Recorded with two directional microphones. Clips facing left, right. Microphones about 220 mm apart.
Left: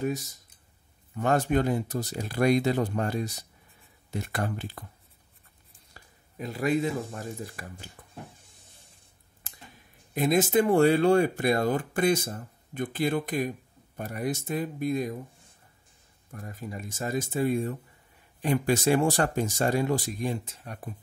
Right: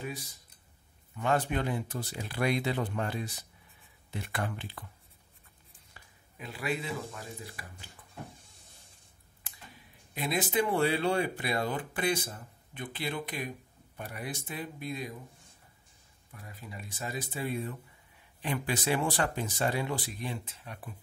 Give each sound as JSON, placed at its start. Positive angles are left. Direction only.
{"t": 0.0, "sound": "speech", "side_deg": 45}
{"t": 5.9, "sound": "speech", "side_deg": 40}
{"t": 10.1, "sound": "speech", "side_deg": 45}
{"t": 16.3, "sound": "speech", "side_deg": 45}